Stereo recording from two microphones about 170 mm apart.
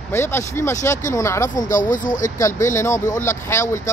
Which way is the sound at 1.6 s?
50° left (ahead or behind).